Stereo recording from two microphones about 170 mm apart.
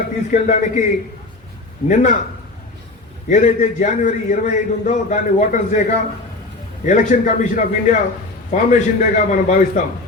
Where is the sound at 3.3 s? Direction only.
45° left (ahead or behind).